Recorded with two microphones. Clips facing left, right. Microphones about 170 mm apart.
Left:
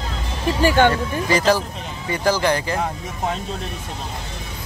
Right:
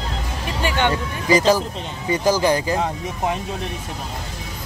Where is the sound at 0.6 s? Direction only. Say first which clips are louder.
Left 6 dB; 40° left (ahead or behind).